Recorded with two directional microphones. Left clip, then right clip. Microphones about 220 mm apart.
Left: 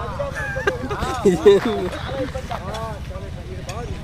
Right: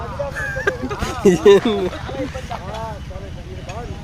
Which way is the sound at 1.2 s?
35° right (ahead or behind).